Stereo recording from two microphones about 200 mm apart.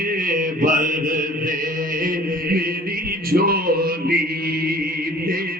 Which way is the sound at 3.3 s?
50° right (ahead or behind).